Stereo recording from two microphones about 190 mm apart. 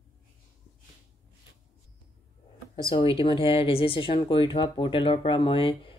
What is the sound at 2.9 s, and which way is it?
Speech, 25° left (ahead or behind).